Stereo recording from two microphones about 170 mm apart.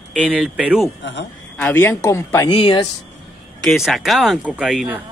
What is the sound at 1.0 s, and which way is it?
Speech, 90° left.